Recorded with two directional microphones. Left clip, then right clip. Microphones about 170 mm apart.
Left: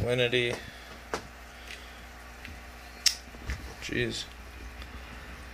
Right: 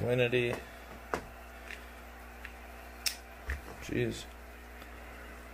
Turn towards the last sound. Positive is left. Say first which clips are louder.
# left 3 dB
turn(degrees=-10)  # may be behind; listen again after turning